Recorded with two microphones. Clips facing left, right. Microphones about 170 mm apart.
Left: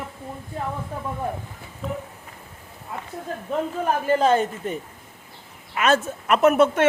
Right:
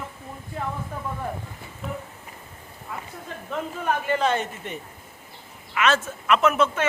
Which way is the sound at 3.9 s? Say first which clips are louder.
Left 4 dB; 40° left (ahead or behind).